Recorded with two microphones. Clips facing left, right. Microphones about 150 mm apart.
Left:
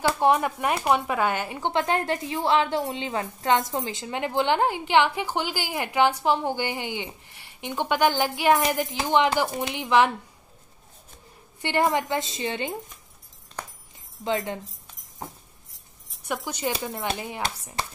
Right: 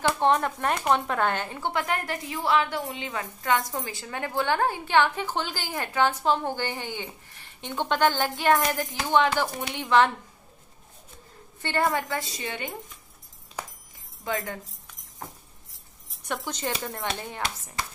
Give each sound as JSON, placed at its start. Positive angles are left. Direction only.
{"t": 0.2, "sound": "a woman's voice", "side_deg": 10}
{"t": 1.6, "sound": "a woman's voice", "side_deg": 25}
{"t": 11.6, "sound": "a woman's voice", "side_deg": 15}
{"t": 14.2, "sound": "speech", "side_deg": 25}
{"t": 16.3, "sound": "a woman's voice", "side_deg": 10}